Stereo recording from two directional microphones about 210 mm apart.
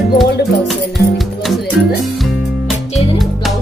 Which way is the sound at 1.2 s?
Centre (ahead or behind).